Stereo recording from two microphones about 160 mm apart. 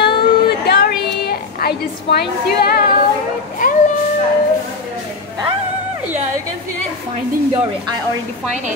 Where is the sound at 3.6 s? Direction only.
60° left (ahead or behind).